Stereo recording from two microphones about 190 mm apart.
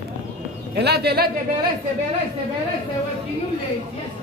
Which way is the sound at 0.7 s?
55° right (ahead or behind).